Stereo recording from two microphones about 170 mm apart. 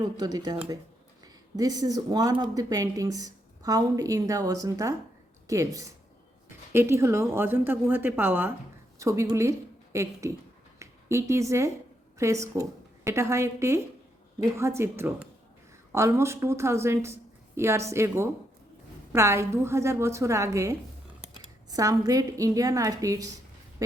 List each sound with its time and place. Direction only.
0.5 s a woman's voice: 25° right (ahead or behind)